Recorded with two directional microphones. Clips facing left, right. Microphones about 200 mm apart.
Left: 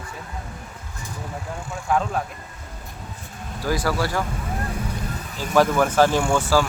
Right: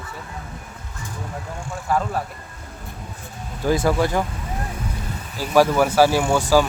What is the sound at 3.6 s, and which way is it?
Speech, 20° right (ahead or behind).